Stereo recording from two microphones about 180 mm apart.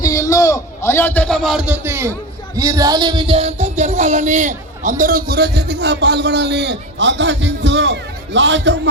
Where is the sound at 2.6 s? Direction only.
20° right (ahead or behind).